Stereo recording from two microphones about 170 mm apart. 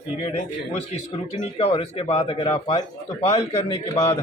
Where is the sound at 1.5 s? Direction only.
35° left (ahead or behind).